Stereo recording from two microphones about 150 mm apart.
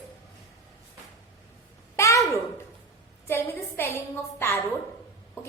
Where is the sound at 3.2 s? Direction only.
15° left (ahead or behind).